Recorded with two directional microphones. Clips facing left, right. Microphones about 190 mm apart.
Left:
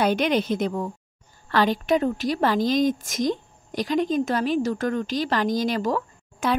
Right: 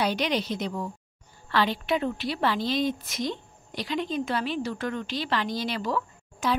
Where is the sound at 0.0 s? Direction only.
50° left (ahead or behind).